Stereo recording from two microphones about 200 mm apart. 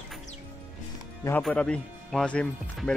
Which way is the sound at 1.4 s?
5° left (ahead or behind).